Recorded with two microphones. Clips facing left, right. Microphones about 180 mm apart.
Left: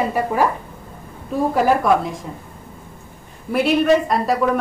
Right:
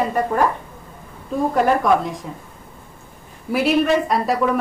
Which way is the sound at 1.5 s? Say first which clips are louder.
Even; 5° left (ahead or behind).